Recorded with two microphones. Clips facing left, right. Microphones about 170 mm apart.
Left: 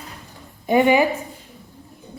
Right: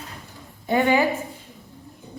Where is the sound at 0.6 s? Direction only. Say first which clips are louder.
Left 4 dB; 15° left (ahead or behind).